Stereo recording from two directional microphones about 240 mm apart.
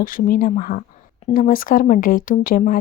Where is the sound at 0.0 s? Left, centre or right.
Left.